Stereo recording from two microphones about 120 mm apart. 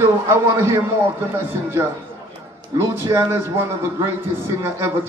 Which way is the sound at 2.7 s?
30° right (ahead or behind).